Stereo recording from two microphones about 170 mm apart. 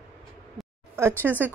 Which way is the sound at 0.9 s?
10° right (ahead or behind).